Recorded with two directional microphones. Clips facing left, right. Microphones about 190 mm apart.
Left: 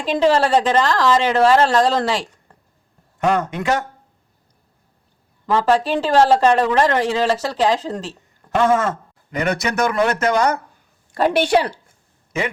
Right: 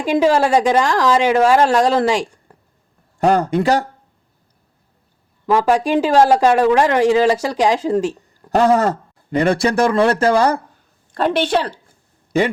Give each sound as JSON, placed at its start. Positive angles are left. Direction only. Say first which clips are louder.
{"t": 0.0, "sound": "speech", "louder": "right 2 dB", "side_deg": -10}
{"t": 3.2, "sound": "speech", "louder": "right 4 dB", "side_deg": -35}
{"t": 5.5, "sound": "speech", "louder": "right 2 dB", "side_deg": -10}
{"t": 8.4, "sound": "speech", "louder": "right 3 dB", "side_deg": -35}
{"t": 11.1, "sound": "speech", "louder": "left 1 dB", "side_deg": 10}
{"t": 12.3, "sound": "speech", "louder": "right 7 dB", "side_deg": -35}